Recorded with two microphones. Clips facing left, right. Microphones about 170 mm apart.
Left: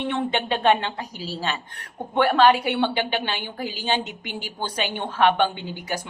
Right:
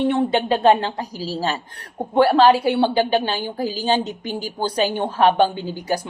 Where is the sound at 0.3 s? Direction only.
35° right (ahead or behind).